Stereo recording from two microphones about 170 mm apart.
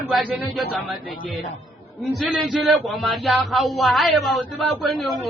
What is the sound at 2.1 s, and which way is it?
Speech, centre (ahead or behind).